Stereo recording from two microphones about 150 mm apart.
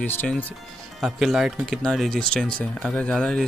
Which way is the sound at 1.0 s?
Centre (ahead or behind).